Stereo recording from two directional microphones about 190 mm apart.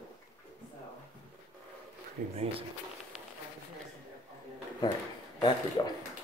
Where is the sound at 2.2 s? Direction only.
40° right (ahead or behind).